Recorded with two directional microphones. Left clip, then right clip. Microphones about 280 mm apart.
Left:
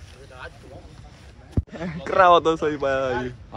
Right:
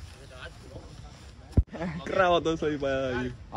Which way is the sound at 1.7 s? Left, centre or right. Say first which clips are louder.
Left 3 dB; right.